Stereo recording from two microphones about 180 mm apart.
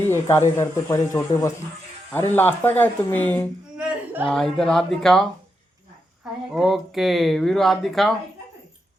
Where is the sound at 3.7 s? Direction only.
10° right (ahead or behind).